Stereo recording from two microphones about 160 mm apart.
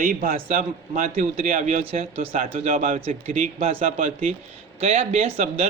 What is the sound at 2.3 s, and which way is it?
A man's voice, 55° right (ahead or behind).